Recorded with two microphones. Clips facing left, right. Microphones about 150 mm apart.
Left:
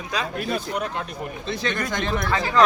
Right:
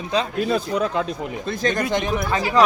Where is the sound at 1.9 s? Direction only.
15° right (ahead or behind).